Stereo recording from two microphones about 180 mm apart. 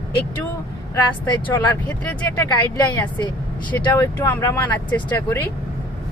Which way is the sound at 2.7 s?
25° left (ahead or behind).